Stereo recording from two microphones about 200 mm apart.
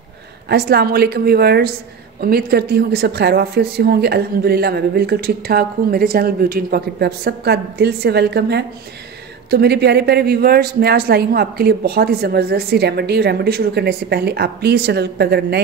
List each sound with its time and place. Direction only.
0.5 s speech: 50° right (ahead or behind)